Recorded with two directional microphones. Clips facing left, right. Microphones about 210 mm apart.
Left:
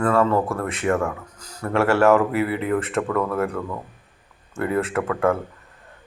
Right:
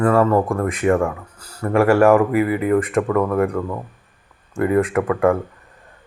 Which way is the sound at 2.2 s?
Centre (ahead or behind).